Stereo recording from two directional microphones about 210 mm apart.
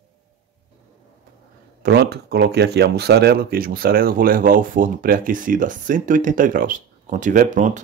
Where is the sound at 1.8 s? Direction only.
50° right (ahead or behind).